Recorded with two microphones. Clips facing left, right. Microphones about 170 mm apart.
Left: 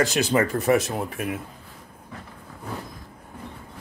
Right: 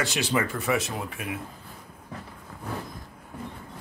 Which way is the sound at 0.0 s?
40° left (ahead or behind).